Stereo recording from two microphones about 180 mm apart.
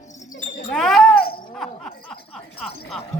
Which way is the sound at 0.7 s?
Centre (ahead or behind).